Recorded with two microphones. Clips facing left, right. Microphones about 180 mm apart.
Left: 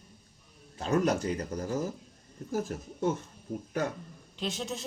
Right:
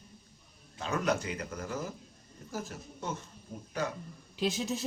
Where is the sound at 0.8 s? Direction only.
40° left (ahead or behind).